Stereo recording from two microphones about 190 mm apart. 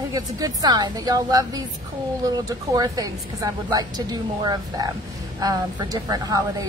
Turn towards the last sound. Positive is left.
turn(degrees=-20)  # may be behind; listen again after turning